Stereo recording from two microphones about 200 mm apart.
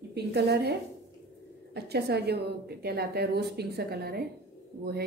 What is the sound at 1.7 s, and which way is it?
A woman's voice, 55° right (ahead or behind).